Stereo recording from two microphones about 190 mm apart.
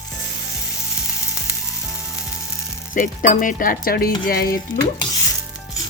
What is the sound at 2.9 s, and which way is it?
Speech, 45° left (ahead or behind).